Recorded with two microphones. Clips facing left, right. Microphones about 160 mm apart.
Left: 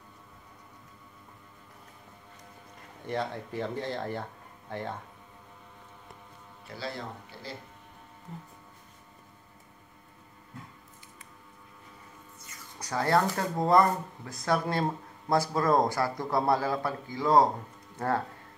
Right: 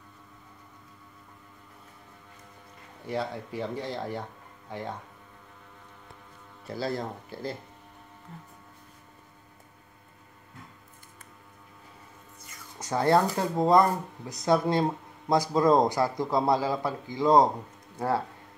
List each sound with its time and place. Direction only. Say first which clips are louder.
3.1 s a man's voice: right 1 dB; 10° right (ahead or behind)
6.7 s speech: right 6 dB; 40° right (ahead or behind)
12.7 s speech: right 3 dB; 25° right (ahead or behind)
13.6 s a man's voice: right 2 dB; 15° right (ahead or behind)